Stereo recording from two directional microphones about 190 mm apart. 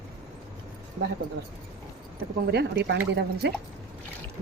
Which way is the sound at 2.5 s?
60° right (ahead or behind).